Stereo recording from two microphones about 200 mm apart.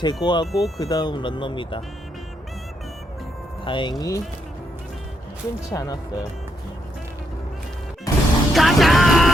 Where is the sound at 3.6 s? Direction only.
25° left (ahead or behind).